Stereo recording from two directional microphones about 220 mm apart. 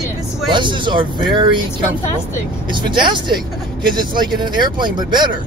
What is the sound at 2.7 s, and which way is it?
Speech, 20° right (ahead or behind).